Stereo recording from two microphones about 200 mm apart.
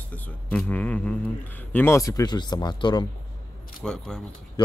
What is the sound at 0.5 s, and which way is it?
A man's voice, 5° left (ahead or behind).